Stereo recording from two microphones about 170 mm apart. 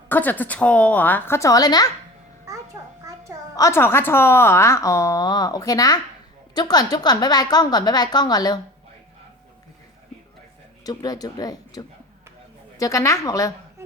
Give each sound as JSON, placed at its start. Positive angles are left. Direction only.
{"t": 0.1, "sound": "a woman's voice", "side_deg": 10}
{"t": 3.0, "sound": "babbling", "side_deg": -20}
{"t": 3.5, "sound": "a woman's voice", "side_deg": 15}
{"t": 10.8, "sound": "a woman's voice", "side_deg": 20}